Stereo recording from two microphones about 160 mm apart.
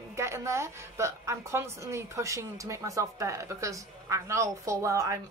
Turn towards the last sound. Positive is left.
turn(degrees=-20)  # may be behind; listen again after turning